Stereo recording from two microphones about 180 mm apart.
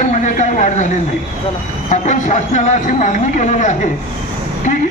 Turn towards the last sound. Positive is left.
turn(degrees=40)  # may be behind; listen again after turning